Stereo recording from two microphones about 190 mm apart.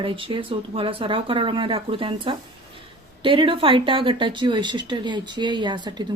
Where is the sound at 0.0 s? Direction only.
25° right (ahead or behind).